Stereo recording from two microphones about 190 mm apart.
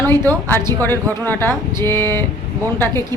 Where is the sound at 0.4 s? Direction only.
10° left (ahead or behind).